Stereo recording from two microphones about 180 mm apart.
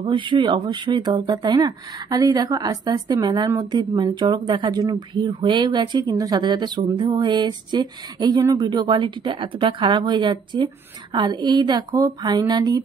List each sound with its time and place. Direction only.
0.0 s speech: 25° right (ahead or behind)